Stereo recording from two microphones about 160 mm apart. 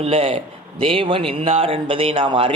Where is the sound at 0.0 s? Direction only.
40° right (ahead or behind).